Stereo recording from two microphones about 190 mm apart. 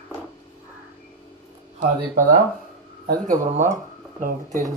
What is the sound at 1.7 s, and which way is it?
Speech, 45° right (ahead or behind).